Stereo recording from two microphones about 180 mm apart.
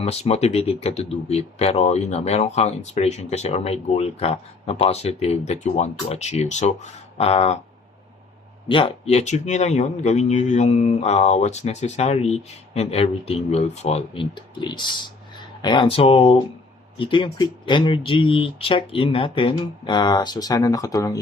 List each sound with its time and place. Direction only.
0.0 s speech: 35° left (ahead or behind)
8.7 s speech: 35° left (ahead or behind)